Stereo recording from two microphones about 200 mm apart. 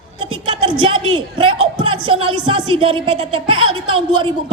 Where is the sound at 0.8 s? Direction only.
25° right (ahead or behind).